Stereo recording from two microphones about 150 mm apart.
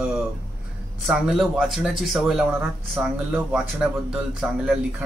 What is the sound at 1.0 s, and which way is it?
Speech, 5° right (ahead or behind).